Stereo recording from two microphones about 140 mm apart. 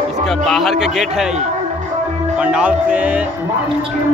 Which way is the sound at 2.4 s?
10° right (ahead or behind).